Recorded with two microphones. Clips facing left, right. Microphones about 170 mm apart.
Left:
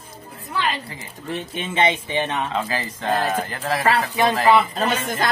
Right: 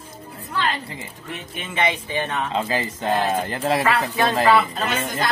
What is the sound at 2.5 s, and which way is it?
Speech, 20° right (ahead or behind).